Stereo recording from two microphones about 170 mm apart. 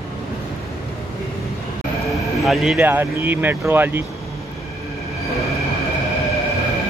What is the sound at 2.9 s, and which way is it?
Speech, 10° right (ahead or behind).